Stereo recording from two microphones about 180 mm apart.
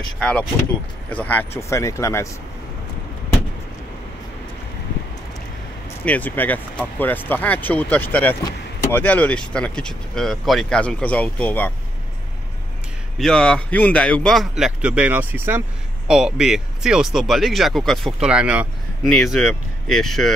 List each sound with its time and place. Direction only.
0.2 s speech: 5° left (ahead or behind)
6.0 s speech: 10° left (ahead or behind)
13.2 s speech: 5° left (ahead or behind)